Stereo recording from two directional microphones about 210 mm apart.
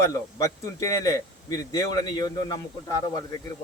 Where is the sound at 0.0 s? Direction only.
15° left (ahead or behind).